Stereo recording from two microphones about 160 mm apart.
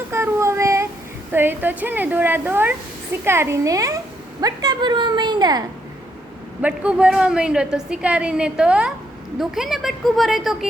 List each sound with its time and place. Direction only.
0.1 s child singing: 15° right (ahead or behind)
1.3 s a woman's voice: 15° right (ahead or behind)
6.6 s a woman's voice: 10° right (ahead or behind)